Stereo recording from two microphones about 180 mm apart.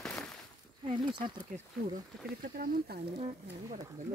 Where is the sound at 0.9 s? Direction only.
25° right (ahead or behind).